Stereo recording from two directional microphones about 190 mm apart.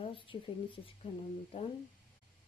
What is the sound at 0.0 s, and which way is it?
A woman's voice, 25° left (ahead or behind).